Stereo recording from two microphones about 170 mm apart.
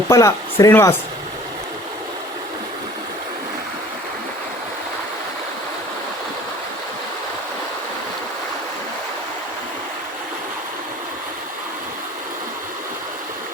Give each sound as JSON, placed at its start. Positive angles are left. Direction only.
{"t": 0.1, "sound": "speech", "side_deg": 20}